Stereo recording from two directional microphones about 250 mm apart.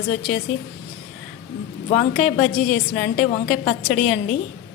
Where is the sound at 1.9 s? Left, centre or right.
Left.